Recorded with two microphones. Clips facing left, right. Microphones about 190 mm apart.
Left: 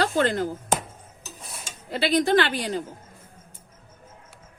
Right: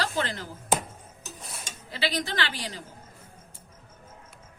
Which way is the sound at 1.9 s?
55° left (ahead or behind).